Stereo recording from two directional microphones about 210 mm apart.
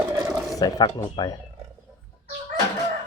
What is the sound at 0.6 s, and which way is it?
Speech, 20° left (ahead or behind).